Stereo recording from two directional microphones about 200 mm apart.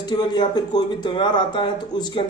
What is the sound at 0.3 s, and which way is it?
Speech, 20° left (ahead or behind).